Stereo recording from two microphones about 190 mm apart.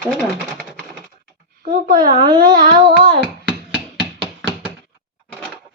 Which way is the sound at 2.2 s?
25° right (ahead or behind).